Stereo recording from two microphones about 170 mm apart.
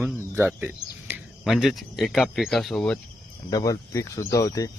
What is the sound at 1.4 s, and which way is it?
Speech, centre (ahead or behind).